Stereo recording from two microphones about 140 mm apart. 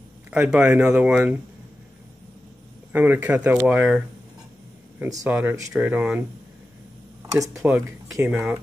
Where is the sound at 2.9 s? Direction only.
15° right (ahead or behind).